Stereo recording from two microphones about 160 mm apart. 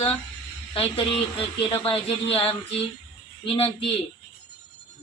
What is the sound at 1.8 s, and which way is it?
Speech, 35° left (ahead or behind).